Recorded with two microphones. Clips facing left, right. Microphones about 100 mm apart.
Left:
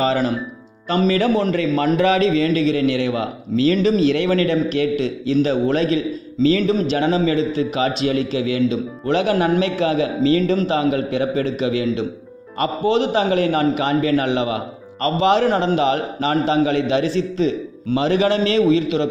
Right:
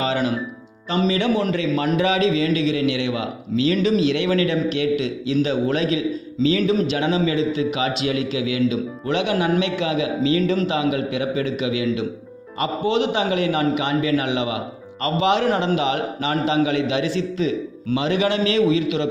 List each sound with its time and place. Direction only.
0.0 s a man's voice: 35° left (ahead or behind)